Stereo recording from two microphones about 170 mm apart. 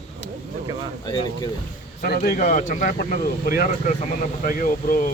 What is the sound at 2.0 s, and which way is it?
Speech, 60° left (ahead or behind).